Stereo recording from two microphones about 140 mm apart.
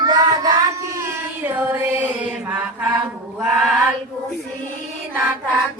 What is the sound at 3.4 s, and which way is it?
Mantra, 5° right (ahead or behind).